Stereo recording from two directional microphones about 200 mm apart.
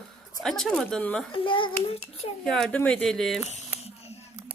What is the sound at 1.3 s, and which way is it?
Speech, 25° left (ahead or behind).